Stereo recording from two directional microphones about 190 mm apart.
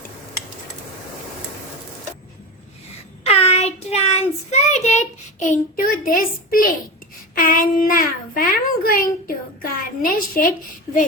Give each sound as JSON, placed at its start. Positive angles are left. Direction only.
{"t": 3.2, "sound": "child singing", "side_deg": 35}
{"t": 5.5, "sound": "a child's voice", "side_deg": 45}
{"t": 7.3, "sound": "a sound", "side_deg": 45}